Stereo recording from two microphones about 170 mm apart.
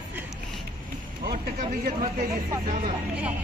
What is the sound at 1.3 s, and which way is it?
Speech, 50° right (ahead or behind).